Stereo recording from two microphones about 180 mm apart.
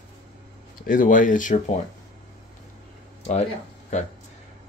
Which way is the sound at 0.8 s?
45° left (ahead or behind).